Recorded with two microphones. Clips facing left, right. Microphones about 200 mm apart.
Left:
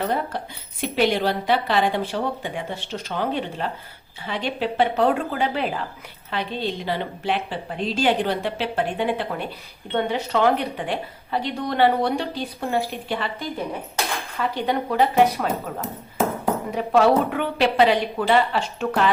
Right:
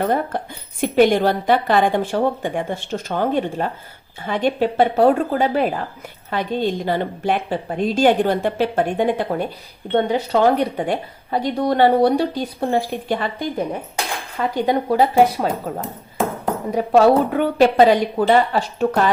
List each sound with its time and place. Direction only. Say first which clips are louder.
0.0 s a woman's voice: right 5 dB; 50° right (ahead or behind)
14.3 s speech: right 5 dB; 40° right (ahead or behind)
16.7 s speech: right 5 dB; 35° right (ahead or behind)